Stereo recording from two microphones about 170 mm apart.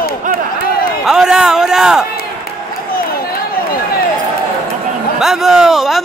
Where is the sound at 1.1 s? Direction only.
5° right (ahead or behind).